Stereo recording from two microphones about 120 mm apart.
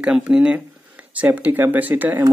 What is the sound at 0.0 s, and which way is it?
Speech, 10° right (ahead or behind).